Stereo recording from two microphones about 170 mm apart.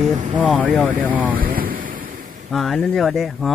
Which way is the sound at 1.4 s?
55° right (ahead or behind).